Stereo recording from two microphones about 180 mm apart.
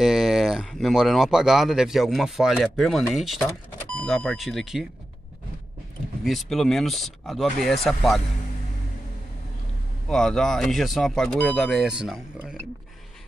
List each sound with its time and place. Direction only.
0.0 s speech: centre (ahead or behind)
6.2 s speech: centre (ahead or behind)
10.0 s speech: 5° left (ahead or behind)